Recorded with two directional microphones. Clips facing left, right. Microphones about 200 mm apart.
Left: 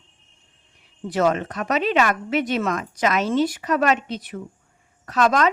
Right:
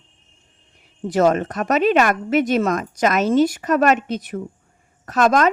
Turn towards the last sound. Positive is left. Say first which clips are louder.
# right 3 dB
turn(degrees=-45)  # may be behind; listen again after turning